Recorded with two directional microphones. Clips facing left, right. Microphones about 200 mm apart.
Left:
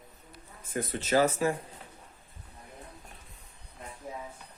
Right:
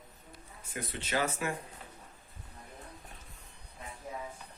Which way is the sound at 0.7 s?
45° left (ahead or behind).